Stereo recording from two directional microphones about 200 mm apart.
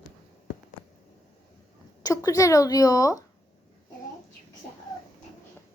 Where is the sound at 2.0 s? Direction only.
15° left (ahead or behind).